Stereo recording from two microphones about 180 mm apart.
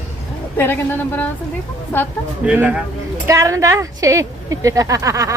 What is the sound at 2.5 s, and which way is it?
Speech, 10° right (ahead or behind).